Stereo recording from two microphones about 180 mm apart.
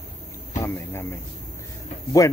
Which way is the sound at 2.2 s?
20° left (ahead or behind).